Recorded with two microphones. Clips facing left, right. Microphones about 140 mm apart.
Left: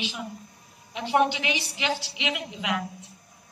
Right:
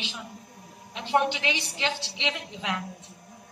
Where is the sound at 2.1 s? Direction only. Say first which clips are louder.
Left 1 dB; 15° left (ahead or behind).